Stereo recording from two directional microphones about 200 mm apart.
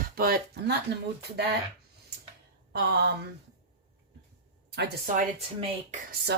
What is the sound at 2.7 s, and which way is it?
Speech, 55° right (ahead or behind).